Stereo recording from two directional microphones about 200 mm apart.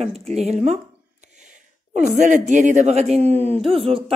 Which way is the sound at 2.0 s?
40° right (ahead or behind).